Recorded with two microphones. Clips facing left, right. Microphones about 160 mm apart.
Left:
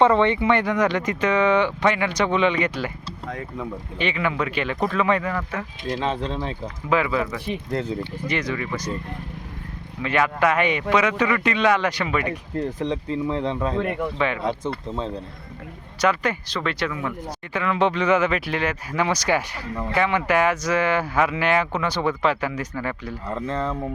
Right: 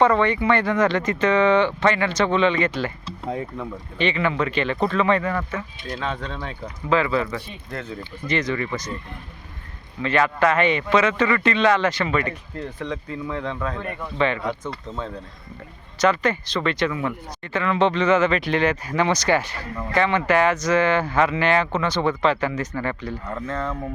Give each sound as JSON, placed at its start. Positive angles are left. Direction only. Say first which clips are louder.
{"t": 0.0, "sound": "speech", "louder": "left 1 dB", "side_deg": 25}
{"t": 5.9, "sound": "speech", "louder": "left 4 dB", "side_deg": 25}
{"t": 6.9, "sound": "speech", "louder": "right 1 dB", "side_deg": 10}
{"t": 10.0, "sound": "speech", "louder": "right 1 dB", "side_deg": 10}
{"t": 12.5, "sound": "speech", "louder": "left 7 dB", "side_deg": 30}
{"t": 13.8, "sound": "speech", "louder": "left 6 dB", "side_deg": 80}
{"t": 14.2, "sound": "speech", "louder": "right 6 dB", "side_deg": 10}
{"t": 16.0, "sound": "speech", "louder": "right 2 dB", "side_deg": 10}
{"t": 23.3, "sound": "speech", "louder": "left 3 dB", "side_deg": 30}